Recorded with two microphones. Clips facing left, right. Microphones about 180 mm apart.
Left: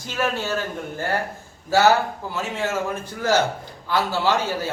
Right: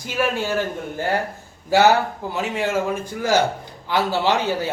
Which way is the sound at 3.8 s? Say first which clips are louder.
Right 2 dB; 20° right (ahead or behind).